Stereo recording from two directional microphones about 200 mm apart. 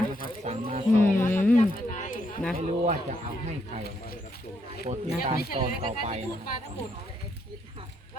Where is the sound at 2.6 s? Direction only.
35° right (ahead or behind).